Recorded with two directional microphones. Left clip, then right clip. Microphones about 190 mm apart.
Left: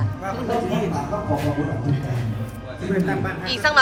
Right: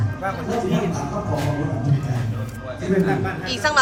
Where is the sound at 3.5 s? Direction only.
10° right (ahead or behind).